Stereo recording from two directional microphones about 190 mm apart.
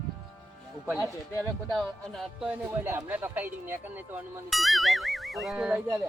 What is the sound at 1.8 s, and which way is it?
Speech, centre (ahead or behind).